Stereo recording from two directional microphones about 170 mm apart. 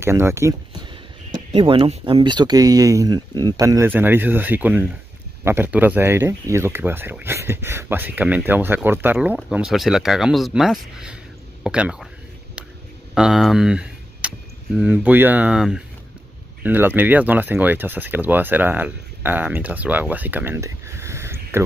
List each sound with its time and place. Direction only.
0.0 s speech: 15° right (ahead or behind)
1.3 s speech: 30° right (ahead or behind); by 12.1 s 5° right (ahead or behind)
13.1 s speech: centre (ahead or behind)